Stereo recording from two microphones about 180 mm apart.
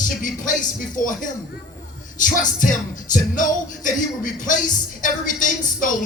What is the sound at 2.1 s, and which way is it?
Speech, 45° left (ahead or behind).